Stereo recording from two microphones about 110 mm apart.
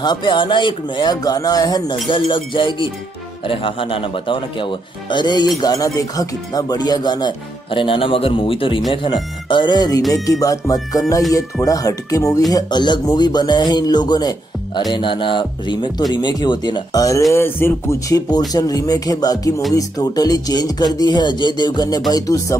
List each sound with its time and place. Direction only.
0.0 s speech: 40° left (ahead or behind)
2.0 s speech: 50° left (ahead or behind)
17.3 s speech: 20° left (ahead or behind)